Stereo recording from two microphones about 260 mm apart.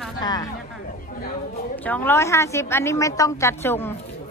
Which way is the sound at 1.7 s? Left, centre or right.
Centre.